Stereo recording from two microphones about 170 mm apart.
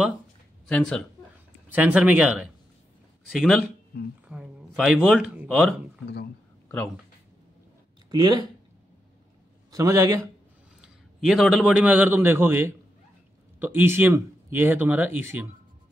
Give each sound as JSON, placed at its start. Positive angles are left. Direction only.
{"t": 0.7, "sound": "speech", "side_deg": 5}
{"t": 1.7, "sound": "speech", "side_deg": -10}
{"t": 8.1, "sound": "speech", "side_deg": -25}
{"t": 9.7, "sound": "a man's voice", "side_deg": -20}
{"t": 10.8, "sound": "a man's voice", "side_deg": 0}